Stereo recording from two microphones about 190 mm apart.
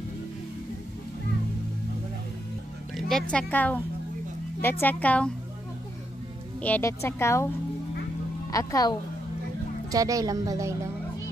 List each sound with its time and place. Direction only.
3.1 s speech: 5° left (ahead or behind)
6.6 s speech: 10° left (ahead or behind)
8.5 s speech: 20° left (ahead or behind)
9.8 s a woman's voice: 20° right (ahead or behind)